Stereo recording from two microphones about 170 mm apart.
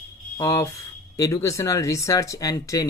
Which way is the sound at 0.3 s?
15° left (ahead or behind).